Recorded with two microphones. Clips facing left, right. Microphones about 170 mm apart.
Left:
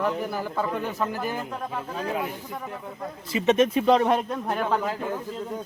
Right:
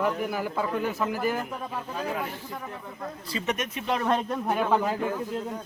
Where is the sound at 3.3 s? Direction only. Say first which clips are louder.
Left 11 dB; 25° left (ahead or behind).